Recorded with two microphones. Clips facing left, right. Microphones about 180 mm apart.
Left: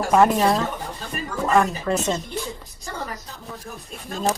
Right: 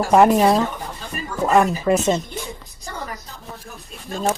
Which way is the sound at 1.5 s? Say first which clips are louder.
Right 4 dB; 20° right (ahead or behind).